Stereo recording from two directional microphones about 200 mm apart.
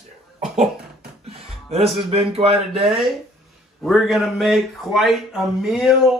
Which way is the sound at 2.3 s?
30° right (ahead or behind).